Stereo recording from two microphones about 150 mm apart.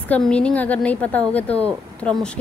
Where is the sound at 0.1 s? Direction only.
10° left (ahead or behind).